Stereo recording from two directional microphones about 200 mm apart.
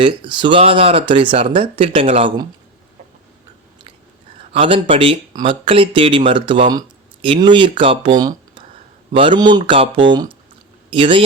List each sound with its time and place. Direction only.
0.0 s speech: 25° right (ahead or behind)
4.5 s speech: 25° right (ahead or behind)